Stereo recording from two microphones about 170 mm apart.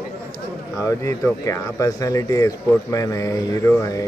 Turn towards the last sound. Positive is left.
turn(degrees=15)  # may be behind; listen again after turning